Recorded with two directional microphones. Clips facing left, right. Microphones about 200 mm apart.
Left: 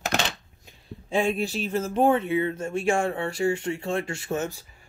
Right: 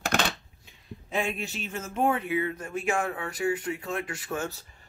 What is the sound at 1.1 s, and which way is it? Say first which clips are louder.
Speech: left 6 dB; 30° left (ahead or behind).